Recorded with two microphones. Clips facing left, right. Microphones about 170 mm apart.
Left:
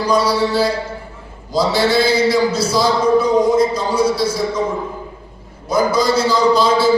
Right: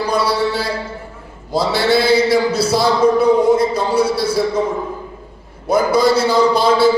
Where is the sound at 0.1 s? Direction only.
60° right (ahead or behind).